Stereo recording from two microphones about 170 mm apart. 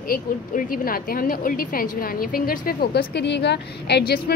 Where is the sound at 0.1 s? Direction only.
55° left (ahead or behind).